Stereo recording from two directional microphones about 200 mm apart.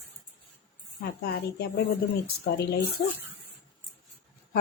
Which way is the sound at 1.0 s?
50° left (ahead or behind).